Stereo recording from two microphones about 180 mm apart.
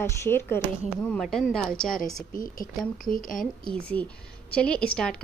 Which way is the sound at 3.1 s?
50° left (ahead or behind).